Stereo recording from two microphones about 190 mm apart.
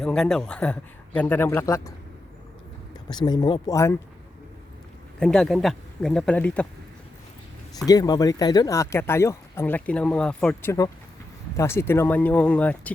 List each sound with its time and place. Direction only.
0.0 s speech: 5° left (ahead or behind)
3.1 s speech: 20° left (ahead or behind)
5.2 s speech: 5° left (ahead or behind)
7.9 s speech: 20° left (ahead or behind)